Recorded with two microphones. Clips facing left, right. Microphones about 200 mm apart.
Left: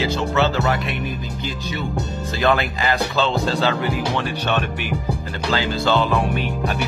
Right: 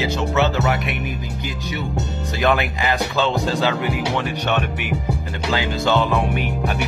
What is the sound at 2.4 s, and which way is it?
Speech, 15° right (ahead or behind).